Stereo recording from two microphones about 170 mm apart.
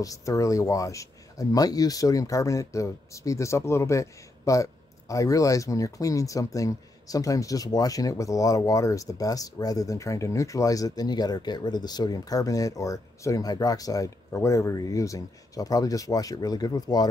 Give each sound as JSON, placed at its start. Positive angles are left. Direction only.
{"t": 0.0, "sound": "speech", "side_deg": 20}